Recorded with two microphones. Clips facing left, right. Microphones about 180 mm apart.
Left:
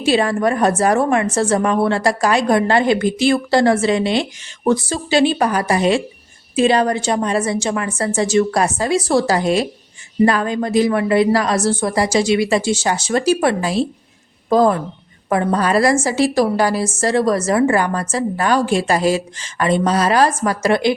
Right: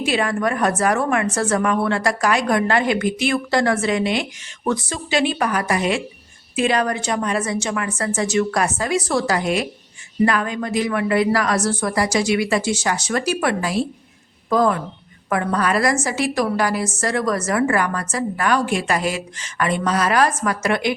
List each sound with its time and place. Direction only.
0.0 s a woman's voice: 30° left (ahead or behind)